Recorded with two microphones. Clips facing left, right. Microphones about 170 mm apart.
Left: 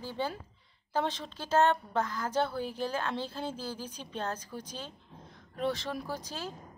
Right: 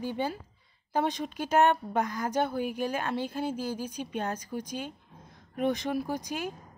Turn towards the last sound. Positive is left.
turn(degrees=-15)  # may be behind; listen again after turning